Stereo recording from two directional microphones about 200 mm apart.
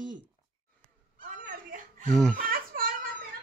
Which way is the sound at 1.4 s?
40° right (ahead or behind).